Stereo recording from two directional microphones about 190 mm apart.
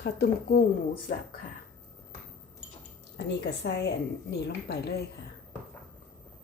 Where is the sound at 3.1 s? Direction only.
65° left (ahead or behind).